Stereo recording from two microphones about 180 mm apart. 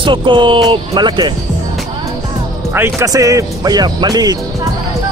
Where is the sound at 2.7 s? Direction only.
15° right (ahead or behind).